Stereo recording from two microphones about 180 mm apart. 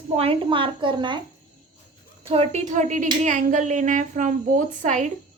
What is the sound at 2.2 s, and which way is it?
A woman's voice, 35° right (ahead or behind).